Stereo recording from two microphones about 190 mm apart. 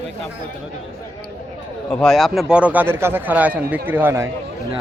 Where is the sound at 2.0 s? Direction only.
Centre (ahead or behind).